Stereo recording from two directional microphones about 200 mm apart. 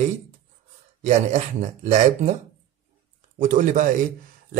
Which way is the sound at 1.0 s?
35° right (ahead or behind).